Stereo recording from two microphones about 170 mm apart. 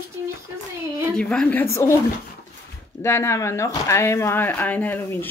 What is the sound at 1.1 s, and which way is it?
Speech, 5° left (ahead or behind).